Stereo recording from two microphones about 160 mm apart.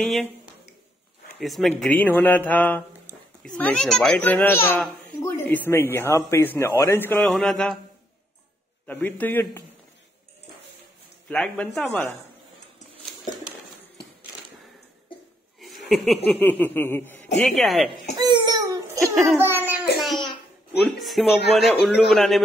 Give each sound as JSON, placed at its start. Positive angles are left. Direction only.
{"t": 0.0, "sound": "speech", "side_deg": 5}
{"t": 1.4, "sound": "speech", "side_deg": 0}
{"t": 8.8, "sound": "speech", "side_deg": 10}
{"t": 11.2, "sound": "speech", "side_deg": 5}
{"t": 15.6, "sound": "chuckle", "side_deg": 0}
{"t": 16.3, "sound": "speech", "side_deg": 10}
{"t": 17.4, "sound": "speech", "side_deg": 0}
{"t": 18.1, "sound": "babbling", "side_deg": -25}
{"t": 20.8, "sound": "speech", "side_deg": 0}